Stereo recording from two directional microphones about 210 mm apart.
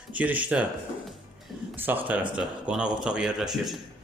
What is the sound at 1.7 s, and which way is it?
Speech, 10° right (ahead or behind).